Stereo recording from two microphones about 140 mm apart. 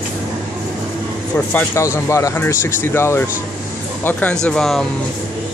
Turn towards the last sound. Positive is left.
turn(degrees=5)  # may be behind; listen again after turning